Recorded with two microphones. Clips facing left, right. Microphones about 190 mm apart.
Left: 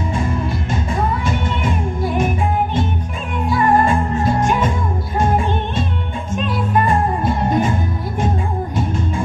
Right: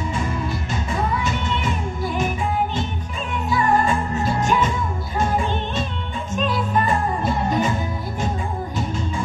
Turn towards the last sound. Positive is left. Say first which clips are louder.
# left 3 dB
turn(degrees=50)  # may be behind; listen again after turning